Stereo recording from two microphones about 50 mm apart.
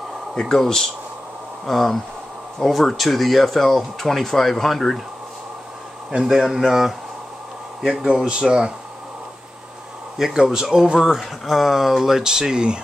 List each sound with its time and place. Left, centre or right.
0.3 s speech: centre
6.1 s speech: centre
8.3 s speech: centre
10.1 s speech: centre